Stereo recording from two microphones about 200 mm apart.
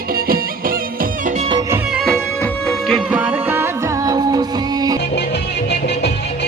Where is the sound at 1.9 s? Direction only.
Centre (ahead or behind).